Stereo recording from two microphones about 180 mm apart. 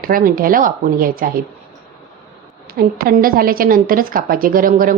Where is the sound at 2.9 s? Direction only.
55° right (ahead or behind).